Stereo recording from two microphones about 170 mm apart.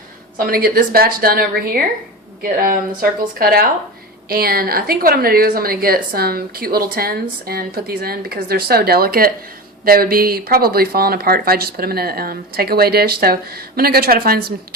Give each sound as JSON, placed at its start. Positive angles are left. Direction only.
{"t": 0.3, "sound": "a woman's voice", "side_deg": -60}